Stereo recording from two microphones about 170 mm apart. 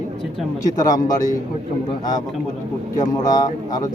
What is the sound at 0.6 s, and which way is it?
Speech, 20° left (ahead or behind).